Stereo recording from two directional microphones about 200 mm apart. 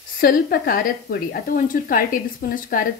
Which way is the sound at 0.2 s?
45° left (ahead or behind).